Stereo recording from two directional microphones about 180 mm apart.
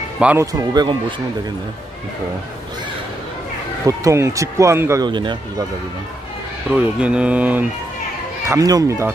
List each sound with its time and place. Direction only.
0.2 s speech: 10° right (ahead or behind)
0.5 s speech: 20° right (ahead or behind)
3.8 s speech: 15° right (ahead or behind)
6.7 s speech: 5° right (ahead or behind)
8.5 s speech: 20° right (ahead or behind)